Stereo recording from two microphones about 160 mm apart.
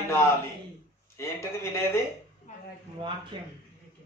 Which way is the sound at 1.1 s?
15° left (ahead or behind).